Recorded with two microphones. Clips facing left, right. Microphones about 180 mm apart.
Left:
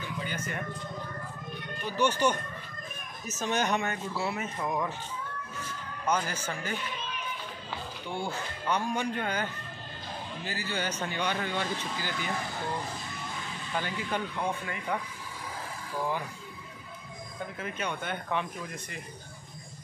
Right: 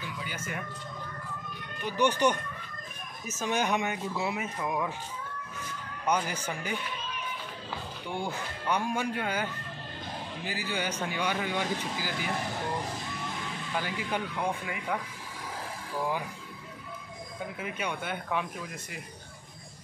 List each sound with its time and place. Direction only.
1.9 s speech: 15° right (ahead or behind)
3.3 s speech: 10° right (ahead or behind)
6.0 s speech: 15° right (ahead or behind)
8.1 s speech: 15° right (ahead or behind)
13.7 s speech: 10° right (ahead or behind)
17.6 s speech: 10° right (ahead or behind)